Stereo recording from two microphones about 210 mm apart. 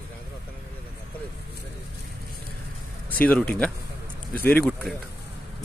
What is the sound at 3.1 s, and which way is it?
Speech, 5° left (ahead or behind).